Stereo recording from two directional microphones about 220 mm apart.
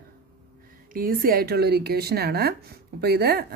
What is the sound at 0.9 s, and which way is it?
Speech, 40° right (ahead or behind).